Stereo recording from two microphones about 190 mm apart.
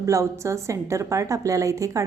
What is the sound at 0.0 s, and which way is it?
A woman's voice, 15° right (ahead or behind).